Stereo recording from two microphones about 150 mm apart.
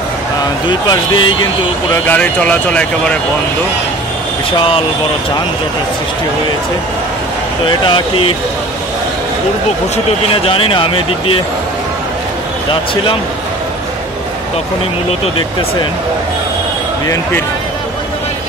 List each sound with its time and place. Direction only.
0.7 s speech: 30° left (ahead or behind)
2.0 s speech: 10° left (ahead or behind)
7.6 s speech: 35° left (ahead or behind)
10.3 s speech: 35° left (ahead or behind)